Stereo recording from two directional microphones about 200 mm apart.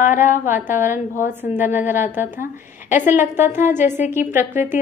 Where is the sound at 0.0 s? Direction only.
40° left (ahead or behind).